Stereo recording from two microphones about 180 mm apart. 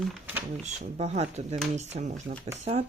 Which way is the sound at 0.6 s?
40° right (ahead or behind).